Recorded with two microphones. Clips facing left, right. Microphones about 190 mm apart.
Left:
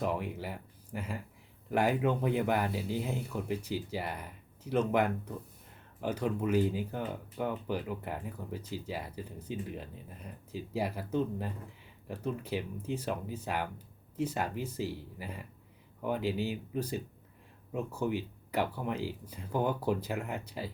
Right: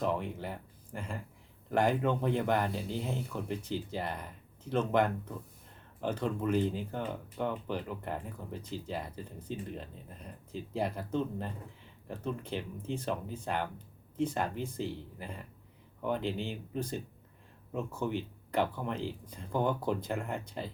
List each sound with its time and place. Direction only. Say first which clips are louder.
0.0 s speech: right 1 dB; 5° left (ahead or behind)